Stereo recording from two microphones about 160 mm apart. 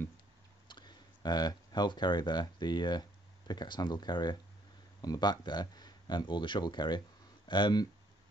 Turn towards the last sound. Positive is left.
turn(degrees=25)  # may be behind; listen again after turning